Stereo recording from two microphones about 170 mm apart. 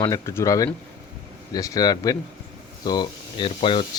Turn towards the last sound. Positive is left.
turn(degrees=30)  # may be behind; listen again after turning